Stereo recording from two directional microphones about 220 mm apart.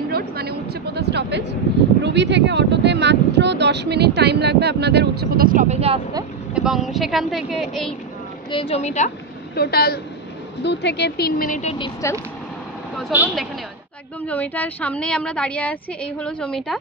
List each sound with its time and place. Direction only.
0.1 s speech: 45° right (ahead or behind); by 5.9 s 30° right (ahead or behind)
6.5 s a woman's voice: centre (ahead or behind)
8.5 s a woman's voice: 25° left (ahead or behind)
9.6 s speech: 45° left (ahead or behind)
11.8 s speech: 15° left (ahead or behind)
12.9 s speech: 5° right (ahead or behind)
14.2 s a woman's voice: 5° left (ahead or behind)